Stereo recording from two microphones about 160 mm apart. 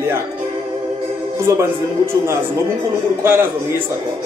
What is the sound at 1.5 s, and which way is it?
Speech, 20° right (ahead or behind).